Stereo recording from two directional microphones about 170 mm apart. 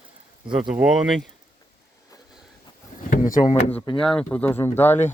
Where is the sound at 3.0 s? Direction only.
50° left (ahead or behind).